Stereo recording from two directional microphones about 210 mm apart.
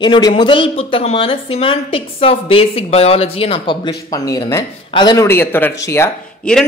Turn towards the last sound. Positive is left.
turn(degrees=5)  # may be behind; listen again after turning